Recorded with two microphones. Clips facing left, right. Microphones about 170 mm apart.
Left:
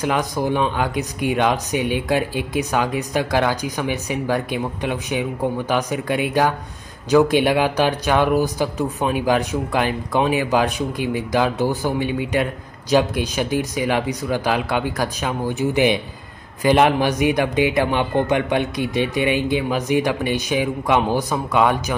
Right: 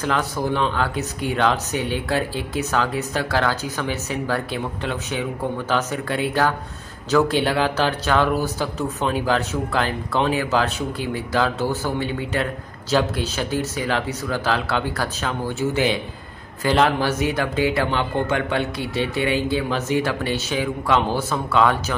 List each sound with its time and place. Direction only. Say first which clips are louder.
0.0 s a man's voice: left 2 dB; 15° left (ahead or behind)